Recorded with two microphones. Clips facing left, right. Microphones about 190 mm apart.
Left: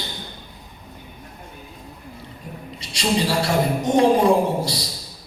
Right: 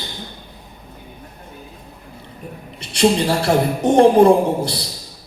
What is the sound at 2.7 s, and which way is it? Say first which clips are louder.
A woman's voice: right 6 dB; 55° right (ahead or behind).